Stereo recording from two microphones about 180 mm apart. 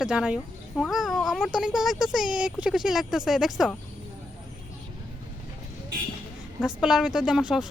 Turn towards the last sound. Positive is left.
turn(degrees=-5)  # may be behind; listen again after turning